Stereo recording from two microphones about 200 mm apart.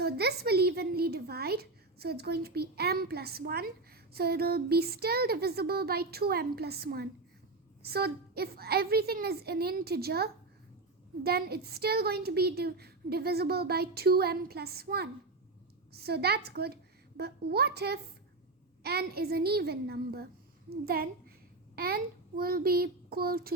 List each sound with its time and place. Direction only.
0.0 s a woman's voice: 55° right (ahead or behind)